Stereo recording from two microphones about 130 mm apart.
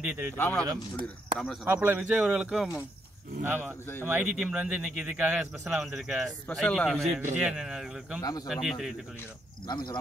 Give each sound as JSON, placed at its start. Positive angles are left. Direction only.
{"t": 0.0, "sound": "speech", "side_deg": -15}
{"t": 0.4, "sound": "speech", "side_deg": 15}
{"t": 1.4, "sound": "speech", "side_deg": 0}
{"t": 1.7, "sound": "speech", "side_deg": -15}
{"t": 8.2, "sound": "speech", "side_deg": 30}
{"t": 8.5, "sound": "speech", "side_deg": 0}
{"t": 9.7, "sound": "speech", "side_deg": 30}